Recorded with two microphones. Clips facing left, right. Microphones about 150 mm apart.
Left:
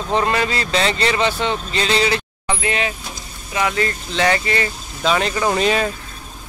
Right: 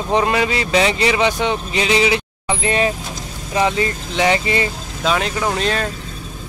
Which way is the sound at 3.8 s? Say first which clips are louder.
Right 1 dB; 15° right (ahead or behind).